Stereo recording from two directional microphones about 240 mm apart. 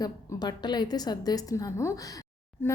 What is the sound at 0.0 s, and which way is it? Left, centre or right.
A woman's voice, centre.